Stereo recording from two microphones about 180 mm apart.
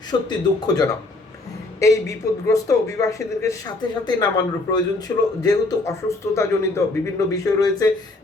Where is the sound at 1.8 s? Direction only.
15° left (ahead or behind).